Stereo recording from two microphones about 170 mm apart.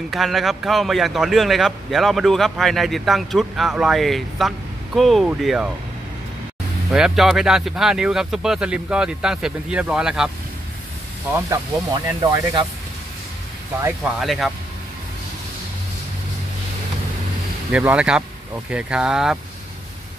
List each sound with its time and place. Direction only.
0.1 s speech: centre (ahead or behind)
6.9 s speech: centre (ahead or behind)
11.3 s speech: 15° right (ahead or behind)
12.2 s speech: 25° right (ahead or behind)
14.2 s speech: centre (ahead or behind)
17.6 s speech: 5° right (ahead or behind)